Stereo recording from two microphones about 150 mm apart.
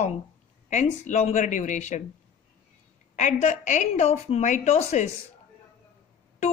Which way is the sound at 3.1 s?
55° left (ahead or behind).